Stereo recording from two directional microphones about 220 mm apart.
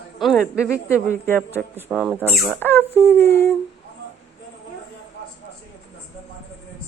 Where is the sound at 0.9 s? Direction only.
10° left (ahead or behind).